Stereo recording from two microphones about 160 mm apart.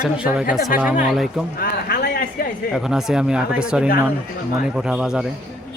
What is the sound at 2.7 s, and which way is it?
Speech, 5° right (ahead or behind).